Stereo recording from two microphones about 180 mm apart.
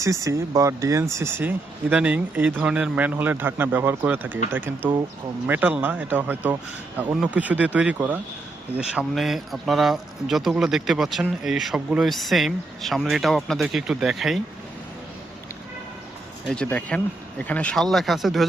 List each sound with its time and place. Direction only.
0.0 s a man's voice: 15° right (ahead or behind); by 14.4 s centre (ahead or behind)
16.5 s a man's voice: 5° left (ahead or behind)